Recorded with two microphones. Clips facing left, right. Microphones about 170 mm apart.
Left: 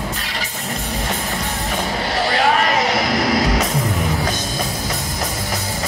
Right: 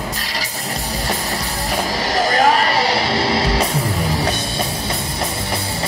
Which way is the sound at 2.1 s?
40° right (ahead or behind).